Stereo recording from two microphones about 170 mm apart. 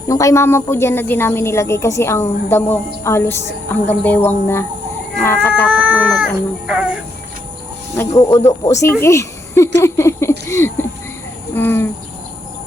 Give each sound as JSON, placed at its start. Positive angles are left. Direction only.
{"t": 0.1, "sound": "a woman's voice", "side_deg": 20}
{"t": 5.2, "sound": "cat", "side_deg": 15}
{"t": 5.7, "sound": "cat", "side_deg": -5}
{"t": 7.9, "sound": "a woman's voice", "side_deg": 15}
{"t": 9.8, "sound": "a sound", "side_deg": 15}
{"t": 11.5, "sound": "cricket", "side_deg": 10}